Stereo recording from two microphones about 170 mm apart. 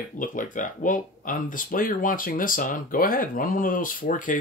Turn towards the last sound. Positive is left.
turn(degrees=50)  # may be behind; listen again after turning